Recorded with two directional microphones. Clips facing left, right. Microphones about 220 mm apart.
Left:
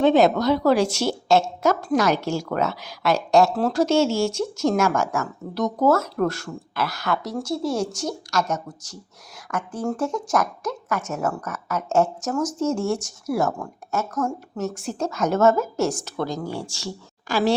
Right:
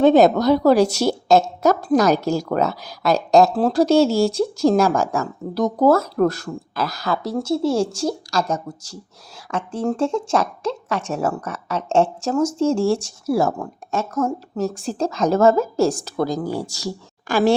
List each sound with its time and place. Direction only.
0.0 s a woman's voice: 40° right (ahead or behind)